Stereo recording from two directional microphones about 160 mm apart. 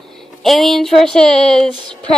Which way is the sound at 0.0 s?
Centre (ahead or behind).